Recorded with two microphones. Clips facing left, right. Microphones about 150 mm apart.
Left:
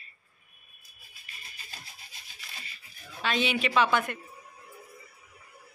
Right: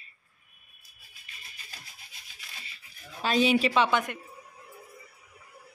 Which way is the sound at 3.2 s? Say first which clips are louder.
Right 5 dB; 40° right (ahead or behind).